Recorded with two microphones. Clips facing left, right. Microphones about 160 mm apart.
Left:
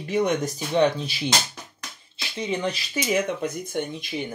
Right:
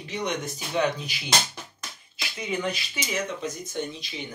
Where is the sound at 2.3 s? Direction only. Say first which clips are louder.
Left 3 dB; 30° left (ahead or behind).